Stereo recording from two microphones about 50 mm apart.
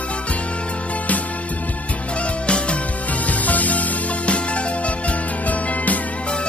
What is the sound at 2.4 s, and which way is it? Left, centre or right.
Music, left.